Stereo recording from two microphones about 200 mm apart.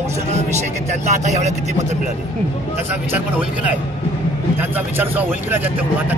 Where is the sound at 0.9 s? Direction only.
35° right (ahead or behind).